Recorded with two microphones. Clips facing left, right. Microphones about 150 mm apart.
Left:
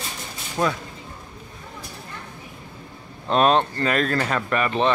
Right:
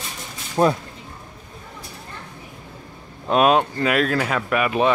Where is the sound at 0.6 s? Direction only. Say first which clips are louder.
Right 5 dB; 35° right (ahead or behind).